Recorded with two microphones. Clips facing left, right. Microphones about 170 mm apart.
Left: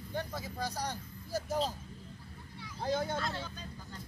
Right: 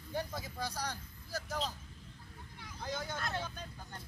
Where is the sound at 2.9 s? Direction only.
30° left (ahead or behind).